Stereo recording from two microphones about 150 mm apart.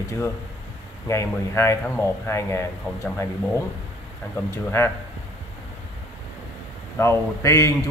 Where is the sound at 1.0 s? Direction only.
20° left (ahead or behind).